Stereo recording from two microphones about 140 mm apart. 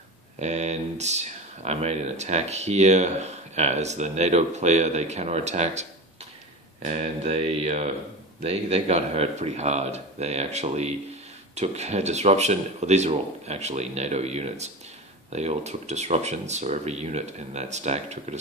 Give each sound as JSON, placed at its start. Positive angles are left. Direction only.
{"t": 0.4, "sound": "speech", "side_deg": -50}